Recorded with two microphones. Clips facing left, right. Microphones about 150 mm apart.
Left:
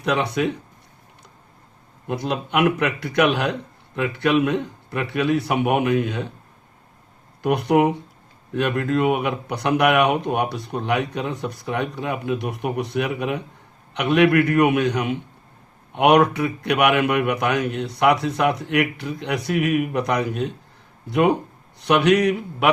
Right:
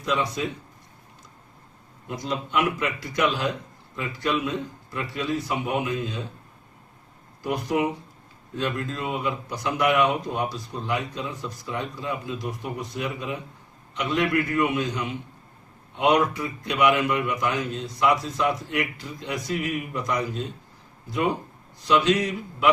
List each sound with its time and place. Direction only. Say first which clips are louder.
0.0 s speech: left 5 dB; 65° left (ahead or behind)
2.0 s speech: left 5 dB; 65° left (ahead or behind)
7.4 s speech: left 7 dB; 65° left (ahead or behind)